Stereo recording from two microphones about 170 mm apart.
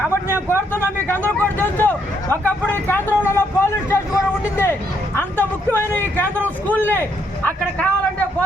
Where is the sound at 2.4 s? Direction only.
10° left (ahead or behind).